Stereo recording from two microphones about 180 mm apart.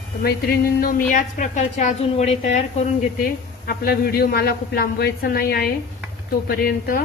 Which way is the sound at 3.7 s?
60° left (ahead or behind).